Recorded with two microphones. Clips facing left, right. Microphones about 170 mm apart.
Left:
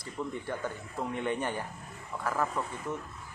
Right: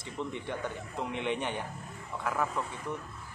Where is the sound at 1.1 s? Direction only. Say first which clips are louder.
Left 1 dB; 75° right (ahead or behind).